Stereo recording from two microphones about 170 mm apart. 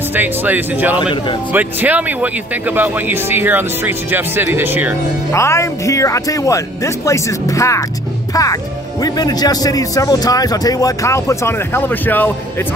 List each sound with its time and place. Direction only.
0.1 s speech: 10° right (ahead or behind)
5.3 s speech: 15° left (ahead or behind)
9.0 s speech: 25° left (ahead or behind)